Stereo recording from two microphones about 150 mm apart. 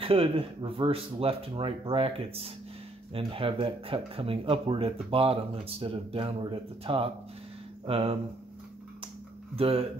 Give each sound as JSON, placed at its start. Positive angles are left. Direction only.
{"t": 0.0, "sound": "speech", "side_deg": -40}
{"t": 9.6, "sound": "speech", "side_deg": -40}